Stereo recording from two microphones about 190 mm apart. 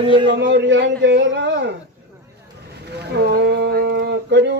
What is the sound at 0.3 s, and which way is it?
A man's voice, 65° right (ahead or behind).